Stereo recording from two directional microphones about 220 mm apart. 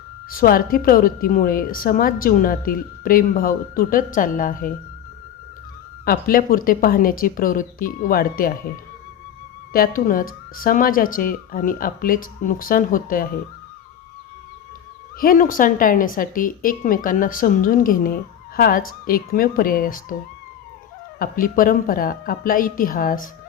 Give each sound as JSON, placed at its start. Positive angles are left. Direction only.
{"t": 0.3, "sound": "a woman's voice", "side_deg": 40}
{"t": 6.1, "sound": "a woman's voice", "side_deg": 40}
{"t": 9.7, "sound": "a woman's voice", "side_deg": 40}
{"t": 15.2, "sound": "a woman's voice", "side_deg": 40}
{"t": 21.2, "sound": "a woman's voice", "side_deg": 40}